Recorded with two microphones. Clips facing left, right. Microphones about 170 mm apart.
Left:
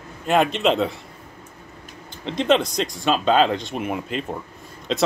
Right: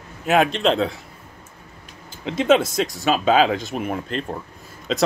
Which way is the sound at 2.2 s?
5° right (ahead or behind).